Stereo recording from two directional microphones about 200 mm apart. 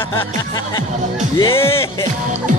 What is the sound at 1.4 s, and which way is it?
Speech, 10° left (ahead or behind).